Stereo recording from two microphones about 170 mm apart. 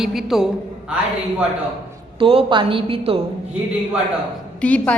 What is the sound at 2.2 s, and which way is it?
A woman's voice, 30° right (ahead or behind).